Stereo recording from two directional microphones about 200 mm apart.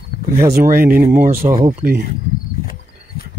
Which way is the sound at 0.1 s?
45° left (ahead or behind).